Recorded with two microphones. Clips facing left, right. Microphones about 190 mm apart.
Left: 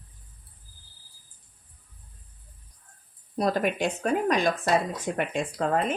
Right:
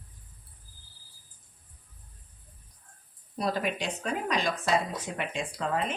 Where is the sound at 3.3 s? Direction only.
50° left (ahead or behind).